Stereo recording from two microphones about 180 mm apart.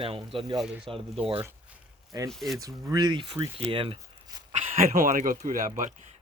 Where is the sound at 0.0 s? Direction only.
30° right (ahead or behind).